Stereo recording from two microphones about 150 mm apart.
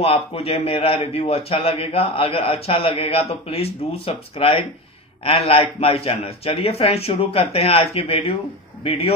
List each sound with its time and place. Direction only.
0.0 s a man's voice: 40° left (ahead or behind)